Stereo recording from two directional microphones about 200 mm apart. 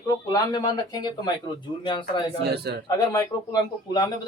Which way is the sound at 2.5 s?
55° right (ahead or behind).